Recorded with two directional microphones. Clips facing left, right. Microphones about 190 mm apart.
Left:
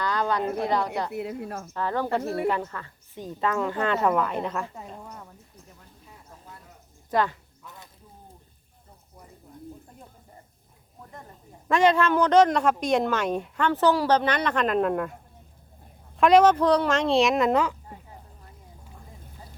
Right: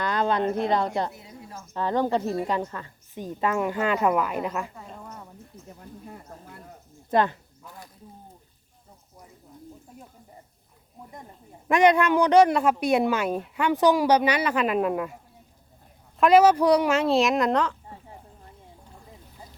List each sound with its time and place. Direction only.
0.0 s a sound: 20° right (ahead or behind)
0.6 s speech: 20° right (ahead or behind)
1.1 s speech: 65° left (ahead or behind)
1.7 s speech: 20° right (ahead or behind)
5.8 s a sound: 55° right (ahead or behind)
7.1 s speech: 20° right (ahead or behind)
11.7 s speech: 15° right (ahead or behind); by 17.7 s 5° left (ahead or behind)